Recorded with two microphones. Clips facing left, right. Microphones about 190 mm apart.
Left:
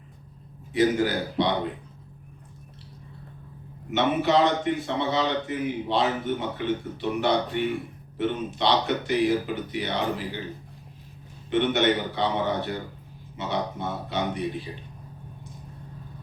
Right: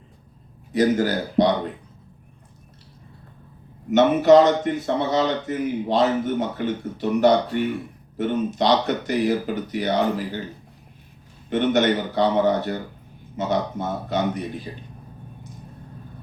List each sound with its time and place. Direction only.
0.7 s speech: 40° right (ahead or behind)
3.9 s a man's voice: 45° right (ahead or behind)
11.4 s a man's voice: 45° right (ahead or behind)